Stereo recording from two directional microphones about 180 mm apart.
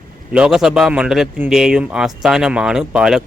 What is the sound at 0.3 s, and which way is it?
Speech, 5° right (ahead or behind).